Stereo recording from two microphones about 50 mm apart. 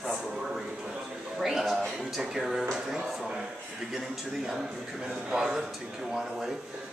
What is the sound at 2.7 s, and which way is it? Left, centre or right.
Speech, centre.